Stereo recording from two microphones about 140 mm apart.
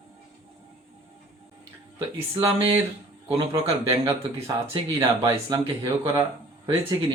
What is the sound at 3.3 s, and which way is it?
Speech, 20° right (ahead or behind).